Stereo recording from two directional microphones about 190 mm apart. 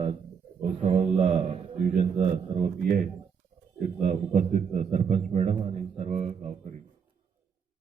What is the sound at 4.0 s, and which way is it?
A man's voice, 40° right (ahead or behind).